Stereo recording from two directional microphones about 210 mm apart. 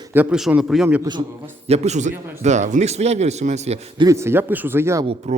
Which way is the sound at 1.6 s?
30° right (ahead or behind).